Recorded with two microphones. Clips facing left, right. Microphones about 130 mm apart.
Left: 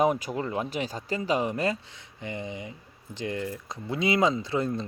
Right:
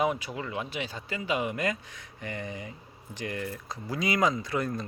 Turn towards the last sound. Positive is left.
turn(degrees=25)  # may be behind; listen again after turning